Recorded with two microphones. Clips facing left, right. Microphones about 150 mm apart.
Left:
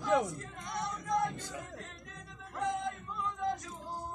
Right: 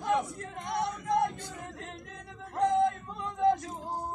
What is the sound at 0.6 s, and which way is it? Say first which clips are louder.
Singing: right 7 dB; 70° right (ahead or behind).